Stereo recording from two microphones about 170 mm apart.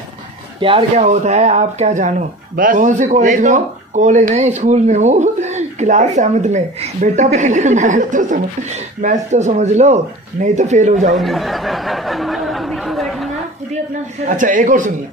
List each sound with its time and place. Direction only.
0.6 s speech: 30° right (ahead or behind)
11.1 s speech: centre (ahead or behind)
14.2 s speech: 50° right (ahead or behind)